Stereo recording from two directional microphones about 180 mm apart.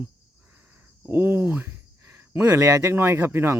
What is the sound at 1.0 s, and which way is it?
Speech, 10° right (ahead or behind).